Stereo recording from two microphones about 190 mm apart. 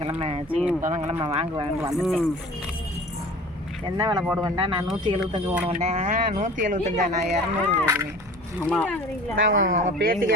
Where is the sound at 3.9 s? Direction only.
20° right (ahead or behind); by 7.4 s 40° right (ahead or behind).